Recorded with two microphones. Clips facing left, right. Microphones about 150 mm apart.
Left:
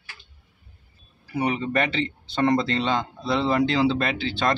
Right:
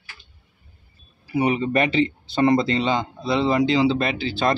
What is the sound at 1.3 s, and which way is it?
Speech, 10° right (ahead or behind).